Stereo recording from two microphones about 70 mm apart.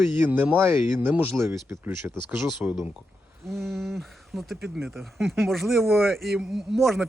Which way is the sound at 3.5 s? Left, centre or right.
Centre.